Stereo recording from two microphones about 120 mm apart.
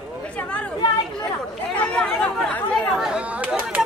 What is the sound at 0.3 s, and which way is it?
Chatter, 10° left (ahead or behind).